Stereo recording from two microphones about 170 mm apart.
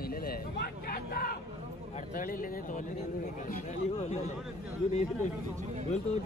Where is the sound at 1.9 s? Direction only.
50° left (ahead or behind).